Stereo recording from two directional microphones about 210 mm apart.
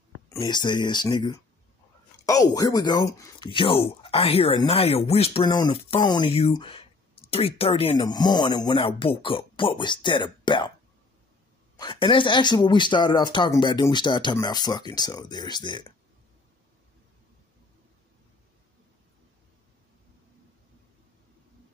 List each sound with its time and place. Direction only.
0.3 s speech: 20° left (ahead or behind)
11.8 s speech: 25° left (ahead or behind)